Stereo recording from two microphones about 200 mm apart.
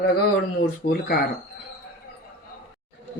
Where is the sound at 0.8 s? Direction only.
55° left (ahead or behind).